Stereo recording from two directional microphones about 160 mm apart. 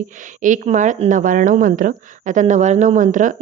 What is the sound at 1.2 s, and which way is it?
Speech, 55° right (ahead or behind).